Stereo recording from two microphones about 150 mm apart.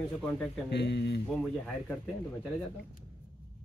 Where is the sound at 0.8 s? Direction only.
90° left.